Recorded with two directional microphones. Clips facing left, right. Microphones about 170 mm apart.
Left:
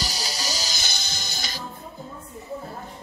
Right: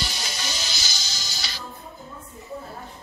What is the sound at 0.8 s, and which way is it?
Music, 55° left (ahead or behind).